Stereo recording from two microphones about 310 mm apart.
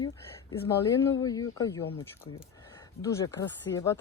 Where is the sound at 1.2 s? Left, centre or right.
Centre.